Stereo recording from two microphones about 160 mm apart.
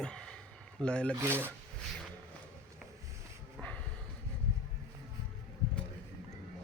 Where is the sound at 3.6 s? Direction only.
10° left (ahead or behind).